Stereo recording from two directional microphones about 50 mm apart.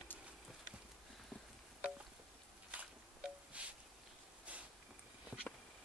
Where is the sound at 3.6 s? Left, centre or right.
Right.